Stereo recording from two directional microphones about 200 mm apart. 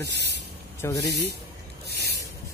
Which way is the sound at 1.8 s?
55° right (ahead or behind).